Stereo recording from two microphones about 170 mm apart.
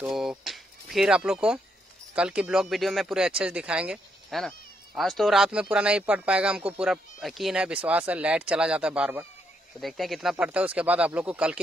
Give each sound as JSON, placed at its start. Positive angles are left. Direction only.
{"t": 0.0, "sound": "speech", "side_deg": -5}